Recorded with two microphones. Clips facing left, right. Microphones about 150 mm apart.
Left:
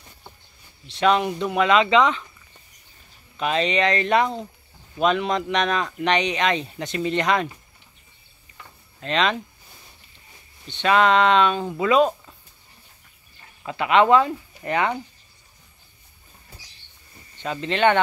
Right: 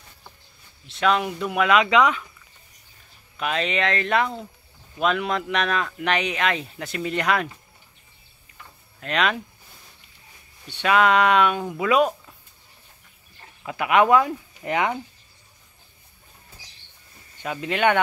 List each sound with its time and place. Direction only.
0.8 s speech: centre (ahead or behind)
3.3 s speech: centre (ahead or behind)
9.0 s speech: 5° right (ahead or behind)
10.7 s speech: 10° right (ahead or behind)
13.7 s speech: 10° right (ahead or behind)
17.4 s speech: 10° right (ahead or behind)